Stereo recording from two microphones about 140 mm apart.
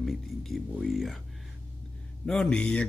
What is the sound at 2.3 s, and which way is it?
Speech, 5° left (ahead or behind).